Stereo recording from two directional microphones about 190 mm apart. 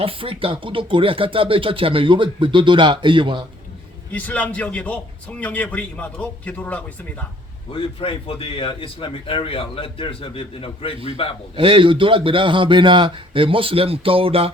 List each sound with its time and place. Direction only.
0.0 s speech: 30° right (ahead or behind)
4.1 s a man's voice: 10° left (ahead or behind)
7.7 s a man's voice: 30° left (ahead or behind)
11.5 s speech: 25° right (ahead or behind)